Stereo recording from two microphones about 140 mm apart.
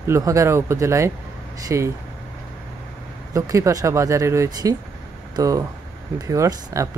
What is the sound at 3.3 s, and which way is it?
Speech, 20° right (ahead or behind).